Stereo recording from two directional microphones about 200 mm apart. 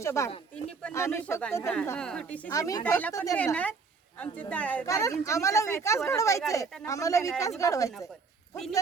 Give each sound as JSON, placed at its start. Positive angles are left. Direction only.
{"t": 0.0, "sound": "a woman's voice", "side_deg": 15}
{"t": 2.5, "sound": "a woman's voice", "side_deg": 15}